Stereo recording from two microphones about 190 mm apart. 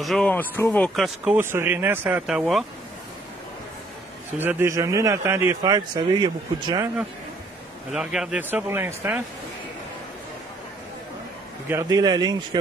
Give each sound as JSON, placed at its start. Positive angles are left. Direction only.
{"t": 0.0, "sound": "speech", "side_deg": 5}
{"t": 4.4, "sound": "speech", "side_deg": -10}
{"t": 7.9, "sound": "speech", "side_deg": -5}
{"t": 11.6, "sound": "speech", "side_deg": -15}